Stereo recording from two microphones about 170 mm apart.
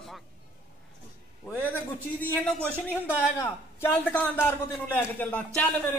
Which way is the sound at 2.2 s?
5° left (ahead or behind).